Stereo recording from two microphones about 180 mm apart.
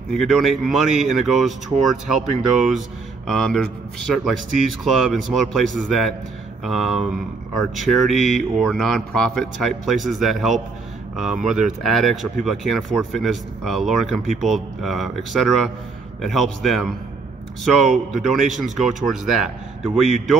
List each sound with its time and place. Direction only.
0.1 s speech: centre (ahead or behind)
11.3 s speech: 45° right (ahead or behind)
11.8 s speech: centre (ahead or behind)
17.9 s speech: centre (ahead or behind)